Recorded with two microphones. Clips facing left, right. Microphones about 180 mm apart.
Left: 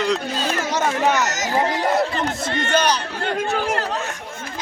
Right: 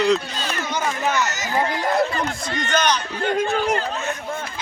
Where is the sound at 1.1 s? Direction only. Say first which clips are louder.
Left 1 dB; 40° left (ahead or behind).